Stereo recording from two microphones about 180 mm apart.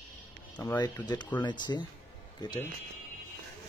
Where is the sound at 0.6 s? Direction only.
20° left (ahead or behind).